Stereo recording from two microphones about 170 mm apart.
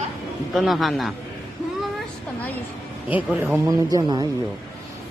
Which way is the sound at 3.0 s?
10° right (ahead or behind).